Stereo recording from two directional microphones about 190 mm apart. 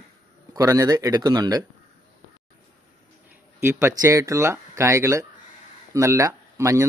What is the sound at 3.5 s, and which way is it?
Speech, 10° right (ahead or behind).